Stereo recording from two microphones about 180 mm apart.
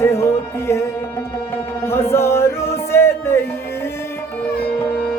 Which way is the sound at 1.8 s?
15° left (ahead or behind).